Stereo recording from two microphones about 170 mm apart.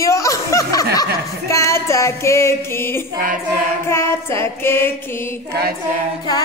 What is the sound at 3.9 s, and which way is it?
Child singing, 15° left (ahead or behind).